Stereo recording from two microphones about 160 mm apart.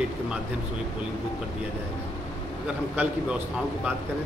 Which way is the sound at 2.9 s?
10° right (ahead or behind).